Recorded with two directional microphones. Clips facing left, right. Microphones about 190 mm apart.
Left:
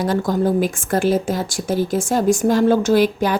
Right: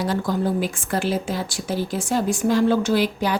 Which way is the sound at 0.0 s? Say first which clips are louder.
Left 4 dB; 45° left (ahead or behind).